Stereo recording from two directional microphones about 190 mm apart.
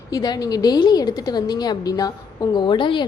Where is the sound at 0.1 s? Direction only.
20° left (ahead or behind).